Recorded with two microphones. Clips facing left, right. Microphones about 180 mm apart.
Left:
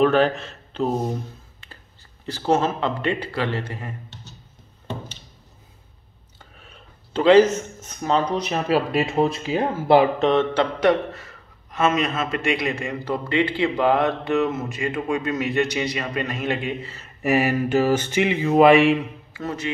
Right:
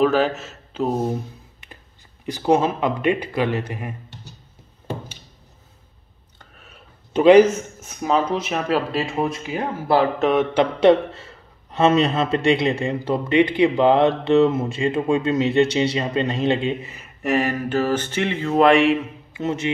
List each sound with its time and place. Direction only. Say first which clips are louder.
0.0 s a man's voice: even; 5° right (ahead or behind)
2.2 s speech: right 2 dB; 15° right (ahead or behind)
4.8 s a sound: right 2 dB; 10° right (ahead or behind)
6.5 s a sound: even; centre (ahead or behind)
7.1 s speech: right 3 dB; 15° right (ahead or behind); by 8.8 s centre (ahead or behind)
8.9 s speech: left 2 dB; 25° left (ahead or behind)
10.1 s a man's voice: even; 5° right (ahead or behind)
10.5 s a man's voice: right 4 dB; 20° right (ahead or behind)
17.2 s a sound: left 1 dB; 5° left (ahead or behind)
19.3 s speech: right 5 dB; 25° right (ahead or behind)